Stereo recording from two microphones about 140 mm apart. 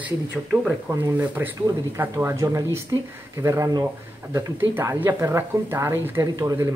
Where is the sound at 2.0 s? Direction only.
15° right (ahead or behind).